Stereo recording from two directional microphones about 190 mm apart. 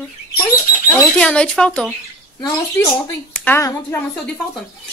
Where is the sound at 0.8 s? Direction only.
15° left (ahead or behind).